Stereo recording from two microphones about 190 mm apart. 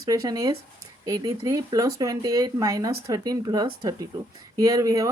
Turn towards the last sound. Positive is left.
turn(degrees=-15)  # may be behind; listen again after turning